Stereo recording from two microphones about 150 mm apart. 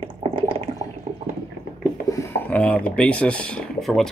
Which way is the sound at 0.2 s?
40° right (ahead or behind).